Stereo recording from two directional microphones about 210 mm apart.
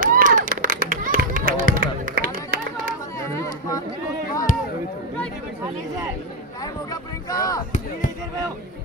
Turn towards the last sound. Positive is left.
turn(degrees=15)  # may be behind; listen again after turning